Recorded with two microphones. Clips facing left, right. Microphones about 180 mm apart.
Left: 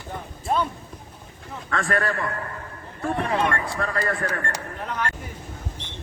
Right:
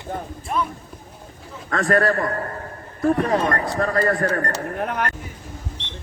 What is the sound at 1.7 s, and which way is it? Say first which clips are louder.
Speech: right 6 dB; 40° right (ahead or behind).